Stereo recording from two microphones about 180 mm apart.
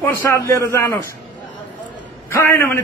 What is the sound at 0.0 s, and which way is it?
Speech, 15° left (ahead or behind).